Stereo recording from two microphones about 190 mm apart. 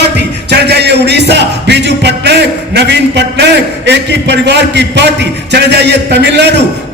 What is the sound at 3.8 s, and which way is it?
A man's voice, 65° right (ahead or behind).